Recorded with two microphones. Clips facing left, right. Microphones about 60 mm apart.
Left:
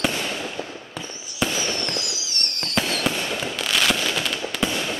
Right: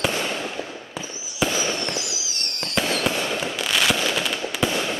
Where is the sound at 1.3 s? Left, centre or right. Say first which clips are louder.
Right 1 dB; centre.